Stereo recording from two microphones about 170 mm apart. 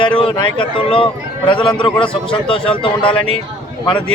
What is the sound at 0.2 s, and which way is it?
A man's voice, 30° left (ahead or behind).